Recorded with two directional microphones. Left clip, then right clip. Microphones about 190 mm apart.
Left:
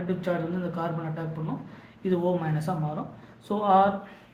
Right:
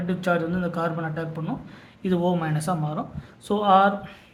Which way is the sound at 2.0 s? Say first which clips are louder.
Right 2 dB; 50° right (ahead or behind).